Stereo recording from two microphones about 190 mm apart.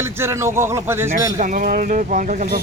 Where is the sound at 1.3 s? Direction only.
45° right (ahead or behind).